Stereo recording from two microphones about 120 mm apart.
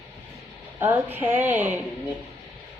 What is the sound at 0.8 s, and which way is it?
Speech, 15° right (ahead or behind).